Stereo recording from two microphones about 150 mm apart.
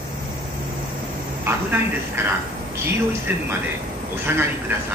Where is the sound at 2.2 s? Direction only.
15° right (ahead or behind).